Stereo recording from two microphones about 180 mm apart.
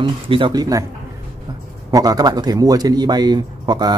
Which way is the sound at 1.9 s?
20° right (ahead or behind).